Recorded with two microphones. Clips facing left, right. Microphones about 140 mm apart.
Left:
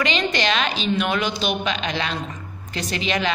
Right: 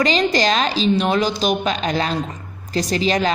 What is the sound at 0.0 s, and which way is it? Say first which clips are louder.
A woman's voice: right 5 dB; 35° right (ahead or behind).